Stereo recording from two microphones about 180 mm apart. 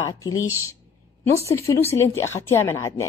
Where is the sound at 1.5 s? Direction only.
15° left (ahead or behind).